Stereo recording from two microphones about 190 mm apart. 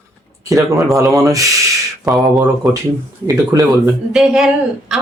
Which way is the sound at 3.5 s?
20° right (ahead or behind).